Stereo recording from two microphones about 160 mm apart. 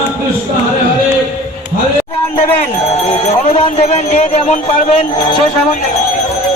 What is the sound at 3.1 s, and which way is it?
Speech, 40° left (ahead or behind).